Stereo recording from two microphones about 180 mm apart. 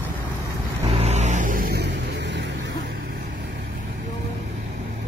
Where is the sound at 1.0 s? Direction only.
40° right (ahead or behind); by 1.8 s 55° right (ahead or behind).